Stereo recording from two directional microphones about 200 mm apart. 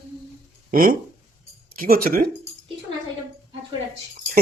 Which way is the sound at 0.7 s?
45° right (ahead or behind).